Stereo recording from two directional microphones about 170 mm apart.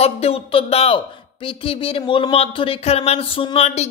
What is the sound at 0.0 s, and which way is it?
A man's voice, 35° left (ahead or behind).